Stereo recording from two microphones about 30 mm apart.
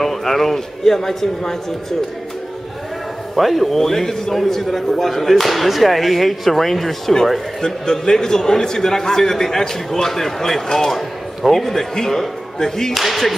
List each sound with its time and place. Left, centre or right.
0.0 s a man's voice: centre
3.3 s a man's voice: centre
7.6 s a man's voice: centre
12.9 s speech: centre